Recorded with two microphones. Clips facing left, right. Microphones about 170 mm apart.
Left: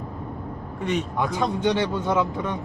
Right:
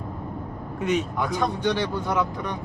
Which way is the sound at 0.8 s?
Centre (ahead or behind).